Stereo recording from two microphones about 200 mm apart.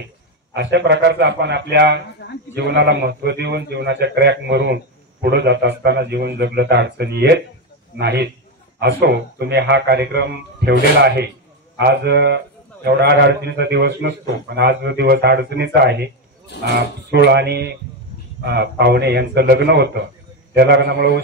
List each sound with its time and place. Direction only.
0.5 s a man's voice: 60° right (ahead or behind)
2.2 s a sound: 65° left (ahead or behind)
2.5 s a man's voice: 55° right (ahead or behind)